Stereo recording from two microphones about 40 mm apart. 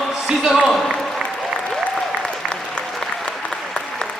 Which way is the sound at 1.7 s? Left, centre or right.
Centre.